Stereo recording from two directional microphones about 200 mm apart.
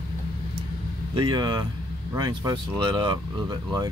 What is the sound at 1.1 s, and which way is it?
Speech, 25° right (ahead or behind).